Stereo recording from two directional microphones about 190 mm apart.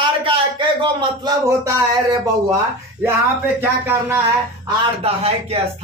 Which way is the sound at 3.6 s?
10° right (ahead or behind).